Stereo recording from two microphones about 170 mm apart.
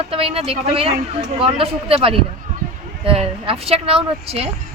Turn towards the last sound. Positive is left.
turn(degrees=-35)  # may be behind; listen again after turning